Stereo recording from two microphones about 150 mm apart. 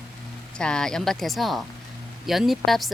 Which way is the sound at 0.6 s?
5° left (ahead or behind).